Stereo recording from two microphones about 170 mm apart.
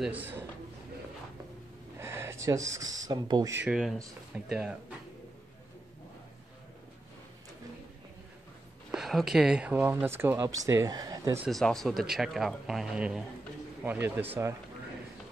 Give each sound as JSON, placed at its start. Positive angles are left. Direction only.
{"t": 0.0, "sound": "speech", "side_deg": -10}
{"t": 2.0, "sound": "speech", "side_deg": -15}
{"t": 3.5, "sound": "speech", "side_deg": -5}
{"t": 8.9, "sound": "speech", "side_deg": 0}
{"t": 11.4, "sound": "speech", "side_deg": 0}